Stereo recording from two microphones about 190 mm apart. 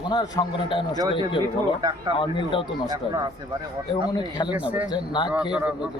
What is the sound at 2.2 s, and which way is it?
Speech, 25° left (ahead or behind).